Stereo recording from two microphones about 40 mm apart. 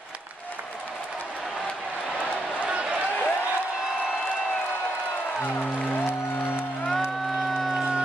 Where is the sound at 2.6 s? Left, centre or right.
Right.